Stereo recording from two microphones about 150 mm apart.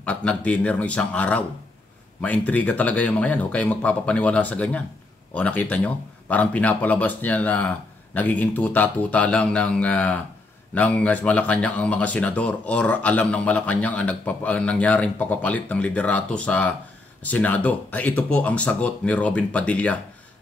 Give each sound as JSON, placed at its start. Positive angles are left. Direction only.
{"t": 0.0, "sound": "speech", "side_deg": 10}